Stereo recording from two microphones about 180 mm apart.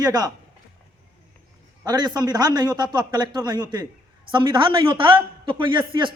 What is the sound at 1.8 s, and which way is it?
A man's voice, 20° right (ahead or behind).